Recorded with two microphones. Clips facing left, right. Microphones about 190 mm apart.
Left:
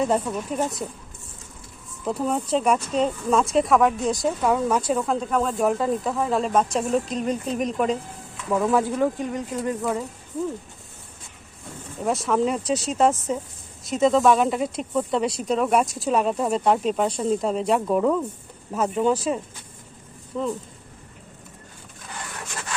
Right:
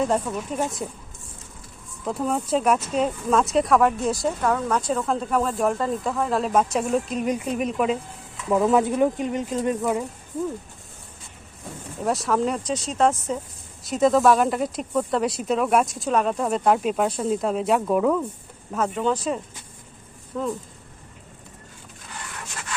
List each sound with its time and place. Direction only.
0.0 s speech: centre (ahead or behind)
2.0 s a woman's voice: centre (ahead or behind)
8.5 s speech: 20° right (ahead or behind)
12.0 s speech: centre (ahead or behind)